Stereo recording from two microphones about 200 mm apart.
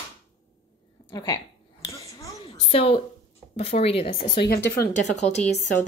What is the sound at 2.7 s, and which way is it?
A woman's voice, 30° left (ahead or behind).